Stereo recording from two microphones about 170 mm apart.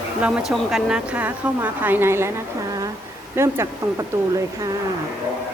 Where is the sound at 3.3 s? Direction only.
15° right (ahead or behind).